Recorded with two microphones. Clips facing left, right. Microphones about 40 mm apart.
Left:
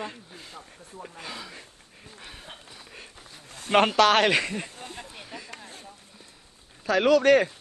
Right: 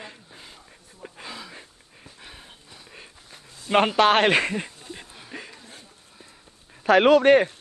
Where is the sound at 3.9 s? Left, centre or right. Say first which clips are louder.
Right 2 dB; right.